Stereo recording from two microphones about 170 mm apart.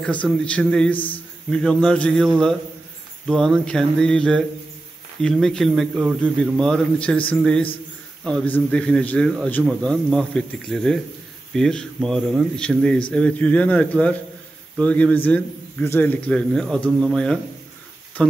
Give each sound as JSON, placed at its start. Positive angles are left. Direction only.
{"t": 0.0, "sound": "a man's voice", "side_deg": 5}
{"t": 0.9, "sound": "speech", "side_deg": 30}
{"t": 1.5, "sound": "a man's voice", "side_deg": 5}